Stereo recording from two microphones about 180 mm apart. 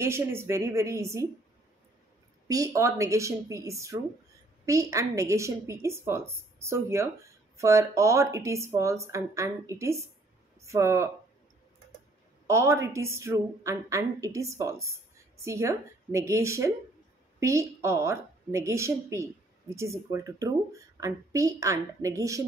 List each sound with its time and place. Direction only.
0.0 s a woman's voice: 15° right (ahead or behind)
2.4 s a woman's voice: 20° right (ahead or behind)
12.4 s a woman's voice: 15° right (ahead or behind)